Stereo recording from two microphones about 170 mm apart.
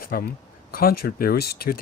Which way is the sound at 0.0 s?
60° left (ahead or behind).